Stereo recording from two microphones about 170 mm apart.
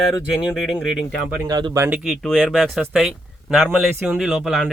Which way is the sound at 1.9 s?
Centre (ahead or behind).